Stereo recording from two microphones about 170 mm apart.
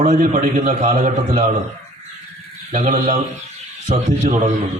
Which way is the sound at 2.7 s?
45° right (ahead or behind).